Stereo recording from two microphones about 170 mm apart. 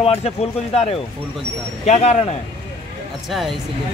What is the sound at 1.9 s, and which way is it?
Speech, 40° left (ahead or behind).